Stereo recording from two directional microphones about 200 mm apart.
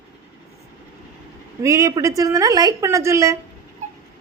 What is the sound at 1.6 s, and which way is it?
A woman's voice, 15° right (ahead or behind).